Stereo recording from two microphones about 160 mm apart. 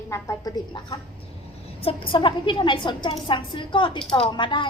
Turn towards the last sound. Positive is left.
turn(degrees=30)  # may be behind; listen again after turning